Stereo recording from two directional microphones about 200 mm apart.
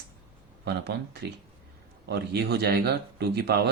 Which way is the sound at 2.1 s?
55° right (ahead or behind).